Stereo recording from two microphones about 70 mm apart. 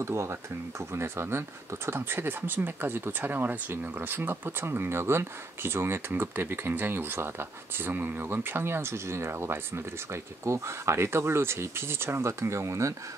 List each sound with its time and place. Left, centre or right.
0.0 s speech: right